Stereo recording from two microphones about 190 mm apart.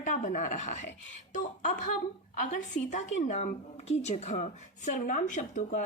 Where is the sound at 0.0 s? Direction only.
40° left (ahead or behind).